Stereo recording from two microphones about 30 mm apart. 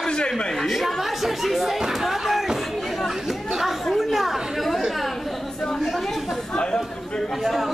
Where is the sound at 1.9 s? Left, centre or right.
Centre.